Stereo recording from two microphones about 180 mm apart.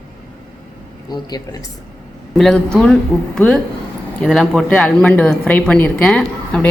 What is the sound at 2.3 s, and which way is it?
Speech, 5° left (ahead or behind).